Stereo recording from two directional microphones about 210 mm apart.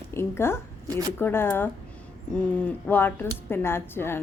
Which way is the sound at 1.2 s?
10° left (ahead or behind).